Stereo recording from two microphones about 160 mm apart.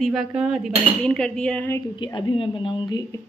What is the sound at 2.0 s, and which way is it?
Speech, 30° left (ahead or behind).